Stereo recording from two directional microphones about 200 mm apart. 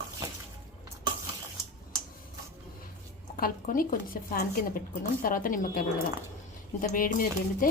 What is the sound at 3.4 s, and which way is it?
Speech, 45° left (ahead or behind).